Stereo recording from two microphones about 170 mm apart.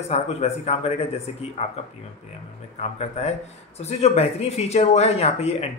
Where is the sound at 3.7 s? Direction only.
40° left (ahead or behind).